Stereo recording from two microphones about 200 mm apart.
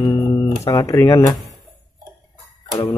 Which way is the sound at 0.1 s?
20° left (ahead or behind).